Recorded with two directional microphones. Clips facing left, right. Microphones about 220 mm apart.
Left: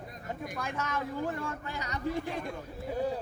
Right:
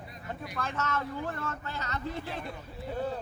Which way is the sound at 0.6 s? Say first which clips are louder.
Right 3 dB; 15° left (ahead or behind).